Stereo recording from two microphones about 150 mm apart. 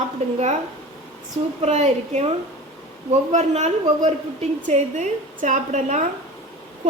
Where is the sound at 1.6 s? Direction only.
50° right (ahead or behind).